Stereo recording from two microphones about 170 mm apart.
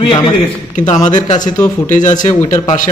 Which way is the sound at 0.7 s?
45° left (ahead or behind).